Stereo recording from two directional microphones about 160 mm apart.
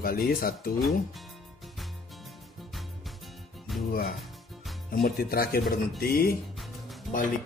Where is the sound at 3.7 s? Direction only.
Centre (ahead or behind).